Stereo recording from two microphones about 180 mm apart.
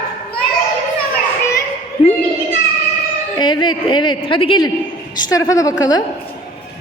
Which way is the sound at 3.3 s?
25° left (ahead or behind).